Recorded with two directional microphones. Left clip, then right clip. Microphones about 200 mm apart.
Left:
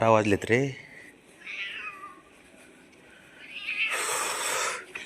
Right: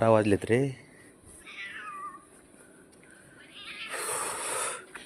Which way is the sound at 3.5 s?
10° right (ahead or behind).